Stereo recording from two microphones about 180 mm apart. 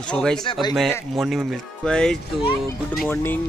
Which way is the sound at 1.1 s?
Centre (ahead or behind).